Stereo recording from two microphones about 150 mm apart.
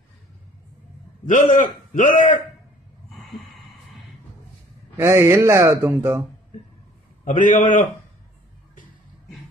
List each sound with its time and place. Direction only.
1.2 s a man's voice: 55° left (ahead or behind)
4.9 s speech: 15° right (ahead or behind)
7.2 s a man's voice: 55° left (ahead or behind)